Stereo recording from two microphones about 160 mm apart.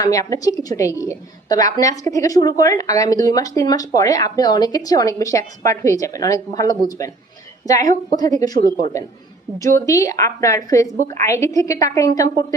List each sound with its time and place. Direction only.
0.0 s a woman's voice: 20° left (ahead or behind)
9.6 s a woman's voice: 20° left (ahead or behind)